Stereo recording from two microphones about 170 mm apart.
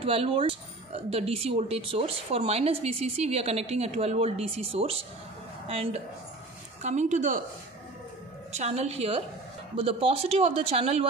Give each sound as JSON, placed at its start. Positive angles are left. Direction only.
{"t": 0.0, "sound": "a woman's voice", "side_deg": -35}
{"t": 8.5, "sound": "speech", "side_deg": -40}